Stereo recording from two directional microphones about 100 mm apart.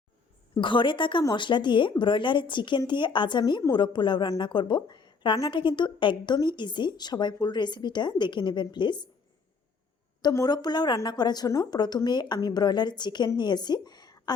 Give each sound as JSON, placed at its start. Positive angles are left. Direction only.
{"t": 0.6, "sound": "a woman's voice", "side_deg": 55}
{"t": 10.3, "sound": "speech", "side_deg": 40}
{"t": 11.4, "sound": "speech", "side_deg": 30}
{"t": 11.7, "sound": "speech", "side_deg": 45}
{"t": 13.8, "sound": "a sound", "side_deg": 45}